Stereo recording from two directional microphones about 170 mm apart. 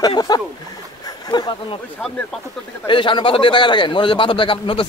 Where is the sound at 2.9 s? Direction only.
30° left (ahead or behind).